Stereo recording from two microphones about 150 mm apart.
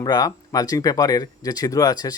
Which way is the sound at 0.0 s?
25° left (ahead or behind).